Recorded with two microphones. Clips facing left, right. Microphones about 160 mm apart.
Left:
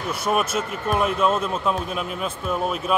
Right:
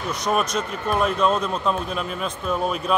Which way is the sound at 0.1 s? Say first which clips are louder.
Even; 5° left (ahead or behind).